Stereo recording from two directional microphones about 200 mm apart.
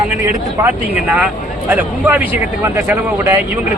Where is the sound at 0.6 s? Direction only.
10° right (ahead or behind).